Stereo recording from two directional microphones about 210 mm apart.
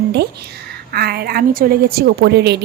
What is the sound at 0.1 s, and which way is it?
A woman's voice, 50° right (ahead or behind).